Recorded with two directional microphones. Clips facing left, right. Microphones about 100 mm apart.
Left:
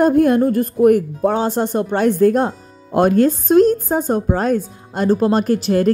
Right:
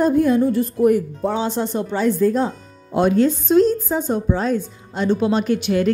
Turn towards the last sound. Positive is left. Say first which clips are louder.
# left 3 dB
turn(degrees=40)  # may be behind; listen again after turning